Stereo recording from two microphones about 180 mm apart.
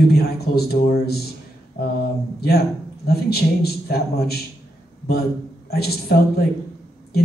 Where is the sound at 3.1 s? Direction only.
60° left (ahead or behind).